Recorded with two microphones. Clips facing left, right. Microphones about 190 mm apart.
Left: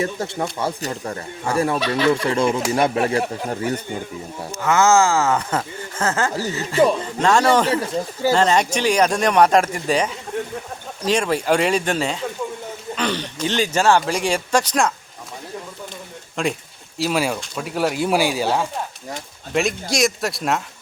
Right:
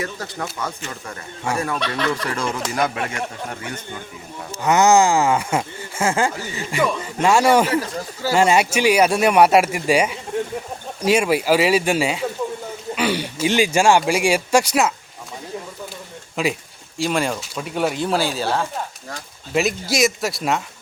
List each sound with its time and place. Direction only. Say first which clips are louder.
0.0 s speech: left 5 dB; 25° left (ahead or behind)
0.6 s speech: left 5 dB; 35° left (ahead or behind)
4.6 s speech: right 1 dB; 15° right (ahead or behind)
6.7 s speech: left 5 dB; 30° left (ahead or behind)
7.2 s speech: right 2 dB; 10° right (ahead or behind)
7.7 s speech: left 1 dB; 25° left (ahead or behind)
8.3 s speech: right 1 dB; 10° right (ahead or behind)
16.3 s speech: right 1 dB; 5° right (ahead or behind); by 18.7 s 15° left (ahead or behind)
19.5 s speech: right 1 dB; 5° right (ahead or behind)